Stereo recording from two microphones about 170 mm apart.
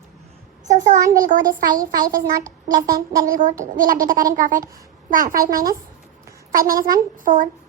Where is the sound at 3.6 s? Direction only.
55° right (ahead or behind).